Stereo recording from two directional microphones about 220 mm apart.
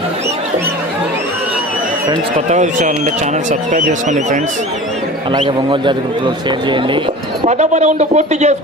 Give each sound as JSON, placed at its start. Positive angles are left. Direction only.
{"t": 2.5, "sound": "speech", "side_deg": -35}
{"t": 5.3, "sound": "speech", "side_deg": -20}
{"t": 7.4, "sound": "speech", "side_deg": -30}